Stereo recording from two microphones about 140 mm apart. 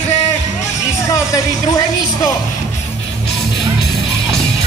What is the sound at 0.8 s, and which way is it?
Music, 25° left (ahead or behind).